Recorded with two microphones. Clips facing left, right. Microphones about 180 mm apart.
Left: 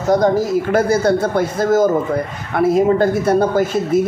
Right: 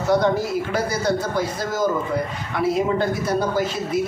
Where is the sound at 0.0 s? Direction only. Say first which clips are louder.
Left 5 dB; 45° left (ahead or behind).